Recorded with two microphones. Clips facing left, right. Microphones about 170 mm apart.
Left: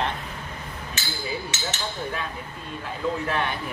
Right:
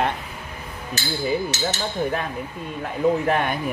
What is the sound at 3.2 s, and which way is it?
Speech, 50° right (ahead or behind).